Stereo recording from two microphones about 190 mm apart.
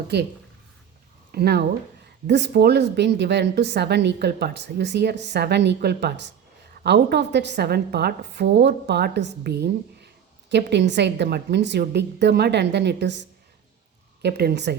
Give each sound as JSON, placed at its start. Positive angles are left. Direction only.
{"t": 1.3, "sound": "speech", "side_deg": -55}